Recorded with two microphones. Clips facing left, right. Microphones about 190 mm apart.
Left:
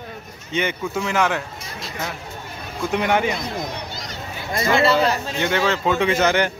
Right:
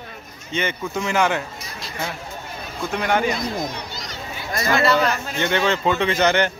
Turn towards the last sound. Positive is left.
turn(degrees=5)  # may be behind; listen again after turning